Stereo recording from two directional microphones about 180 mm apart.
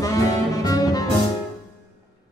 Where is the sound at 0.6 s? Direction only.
20° left (ahead or behind).